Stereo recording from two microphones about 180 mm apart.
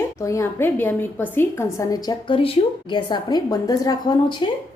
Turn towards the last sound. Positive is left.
turn(degrees=25)  # may be behind; listen again after turning